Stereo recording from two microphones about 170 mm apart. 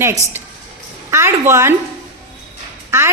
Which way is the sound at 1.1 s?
15° right (ahead or behind).